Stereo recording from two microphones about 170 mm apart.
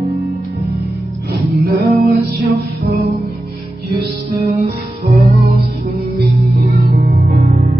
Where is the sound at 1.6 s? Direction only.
65° right (ahead or behind).